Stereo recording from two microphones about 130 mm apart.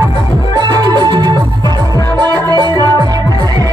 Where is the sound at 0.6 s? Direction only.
35° right (ahead or behind).